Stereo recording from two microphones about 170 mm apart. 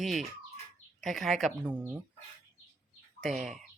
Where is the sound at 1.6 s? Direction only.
10° right (ahead or behind).